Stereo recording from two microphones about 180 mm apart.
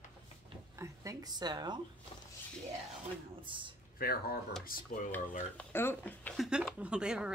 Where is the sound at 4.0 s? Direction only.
55° left (ahead or behind).